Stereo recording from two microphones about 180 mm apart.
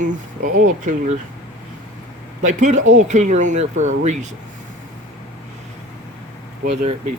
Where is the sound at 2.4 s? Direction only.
40° right (ahead or behind).